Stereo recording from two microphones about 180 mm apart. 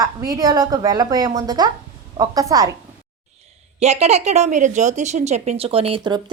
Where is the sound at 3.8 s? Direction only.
35° right (ahead or behind).